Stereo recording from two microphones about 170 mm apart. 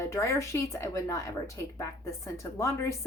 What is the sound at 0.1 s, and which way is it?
A woman's voice, 15° left (ahead or behind).